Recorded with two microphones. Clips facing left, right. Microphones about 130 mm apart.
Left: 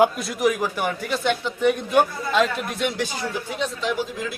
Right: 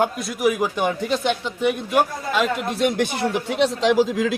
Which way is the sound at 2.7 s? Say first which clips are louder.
Right 5 dB; 35° right (ahead or behind).